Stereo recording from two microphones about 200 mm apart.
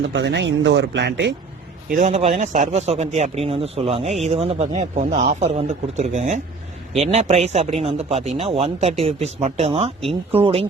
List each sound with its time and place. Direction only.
0.1 s speech: 60° right (ahead or behind)
1.9 s a man's voice: 35° right (ahead or behind)